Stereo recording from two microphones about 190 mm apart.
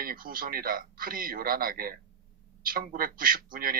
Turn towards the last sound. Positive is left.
turn(degrees=-50)  # may be behind; listen again after turning